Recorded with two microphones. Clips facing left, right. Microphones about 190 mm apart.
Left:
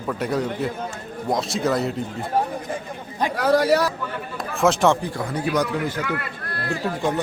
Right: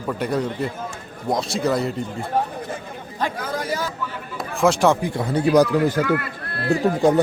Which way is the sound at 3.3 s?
70° left (ahead or behind).